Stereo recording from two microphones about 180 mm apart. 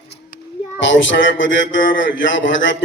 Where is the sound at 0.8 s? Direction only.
90° left.